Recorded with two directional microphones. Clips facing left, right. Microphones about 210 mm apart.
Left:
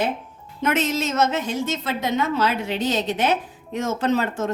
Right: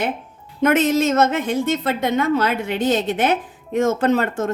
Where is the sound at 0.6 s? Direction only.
55° right (ahead or behind).